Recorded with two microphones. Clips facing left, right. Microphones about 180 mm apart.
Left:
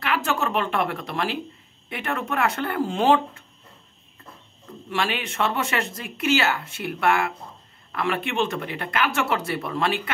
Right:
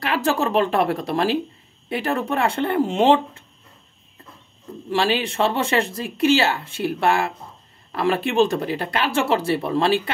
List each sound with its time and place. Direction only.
0.0 s speech: 35° right (ahead or behind)
4.8 s speech: 30° right (ahead or behind)